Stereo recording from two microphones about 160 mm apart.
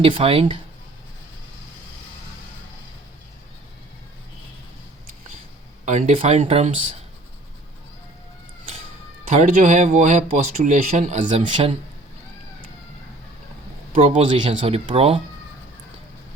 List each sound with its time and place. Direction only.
0.0 s speech: 35° right (ahead or behind)
5.8 s speech: 45° right (ahead or behind)
9.3 s speech: 50° right (ahead or behind)
13.9 s a man's voice: 50° right (ahead or behind)
14.3 s speech: 30° right (ahead or behind)